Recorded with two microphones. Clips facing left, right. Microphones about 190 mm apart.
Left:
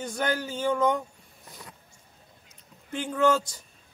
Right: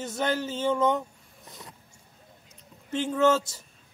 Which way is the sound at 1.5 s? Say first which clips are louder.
Even; centre (ahead or behind).